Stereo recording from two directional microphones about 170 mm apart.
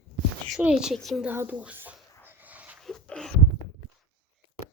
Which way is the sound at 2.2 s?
10° right (ahead or behind).